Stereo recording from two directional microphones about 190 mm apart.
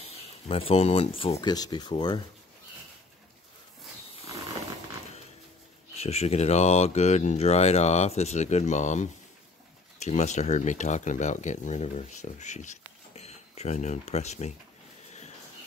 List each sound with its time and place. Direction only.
0.0 s speech: 30° left (ahead or behind)
5.9 s speech: 35° left (ahead or behind)